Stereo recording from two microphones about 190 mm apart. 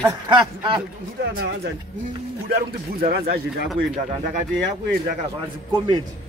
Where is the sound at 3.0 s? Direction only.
55° right (ahead or behind).